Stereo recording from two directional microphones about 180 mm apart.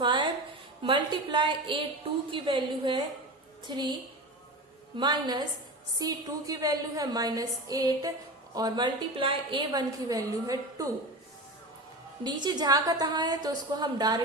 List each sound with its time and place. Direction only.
0.0 s a sound: 25° right (ahead or behind)
0.8 s a woman's voice: 25° right (ahead or behind)
4.9 s a woman's voice: 25° right (ahead or behind)
12.2 s a woman's voice: 25° right (ahead or behind)